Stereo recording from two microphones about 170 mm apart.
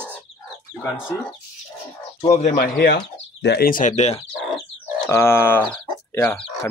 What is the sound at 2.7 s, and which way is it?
Speech, 80° left.